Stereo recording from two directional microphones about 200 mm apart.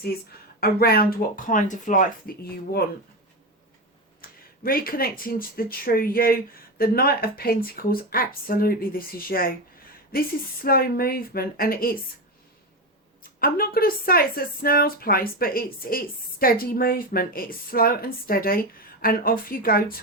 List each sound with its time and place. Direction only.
0.6 s speech: 50° left (ahead or behind)
4.2 s speech: 45° left (ahead or behind)
13.4 s speech: 50° left (ahead or behind)